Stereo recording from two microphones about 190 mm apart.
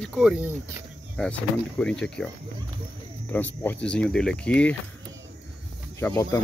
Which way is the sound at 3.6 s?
5° left (ahead or behind).